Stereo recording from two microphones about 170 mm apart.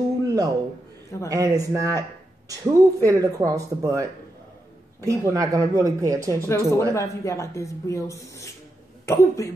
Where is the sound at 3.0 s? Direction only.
20° right (ahead or behind).